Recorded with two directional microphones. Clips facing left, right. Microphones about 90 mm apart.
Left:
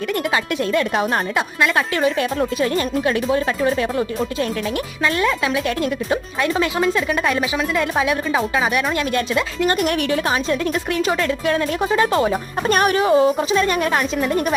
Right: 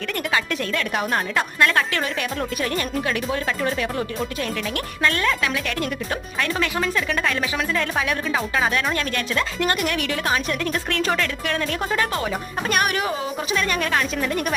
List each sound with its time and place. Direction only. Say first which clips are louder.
0.7 s speech: left 5 dB; 25° left (ahead or behind)
2.4 s speech: left 6 dB; 25° left (ahead or behind)
5.0 s speech: left 2 dB; 15° left (ahead or behind)
10.9 s speech: left 4 dB; 10° left (ahead or behind)
12.1 s speech: left 7 dB; 30° left (ahead or behind)